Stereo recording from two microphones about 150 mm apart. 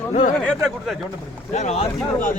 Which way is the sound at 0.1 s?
55° left (ahead or behind).